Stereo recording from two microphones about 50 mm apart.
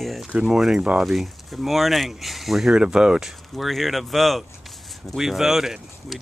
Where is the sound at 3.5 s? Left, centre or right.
Centre.